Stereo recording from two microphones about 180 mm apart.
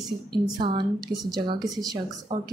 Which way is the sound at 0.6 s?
25° right (ahead or behind).